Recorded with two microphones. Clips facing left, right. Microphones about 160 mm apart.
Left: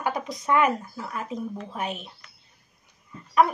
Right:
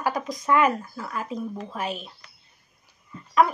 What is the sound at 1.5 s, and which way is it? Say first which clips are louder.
Speech: right 1 dB; 35° right (ahead or behind).